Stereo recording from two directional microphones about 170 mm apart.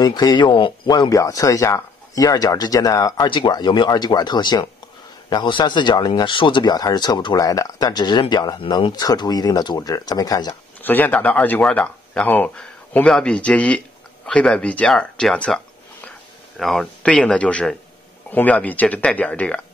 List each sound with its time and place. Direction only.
0.0 s speech: 25° left (ahead or behind)
10.8 s speech: 10° left (ahead or behind)